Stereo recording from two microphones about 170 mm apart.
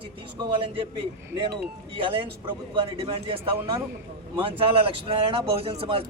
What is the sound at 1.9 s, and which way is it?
A man's voice, 30° right (ahead or behind).